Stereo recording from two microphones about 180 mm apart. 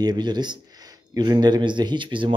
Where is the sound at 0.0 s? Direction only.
25° right (ahead or behind).